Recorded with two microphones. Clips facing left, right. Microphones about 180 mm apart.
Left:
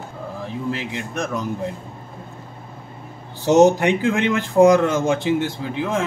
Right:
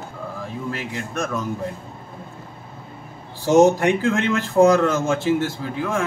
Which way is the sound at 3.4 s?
15° left (ahead or behind).